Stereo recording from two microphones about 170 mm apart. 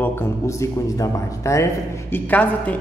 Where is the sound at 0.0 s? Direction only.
15° left (ahead or behind).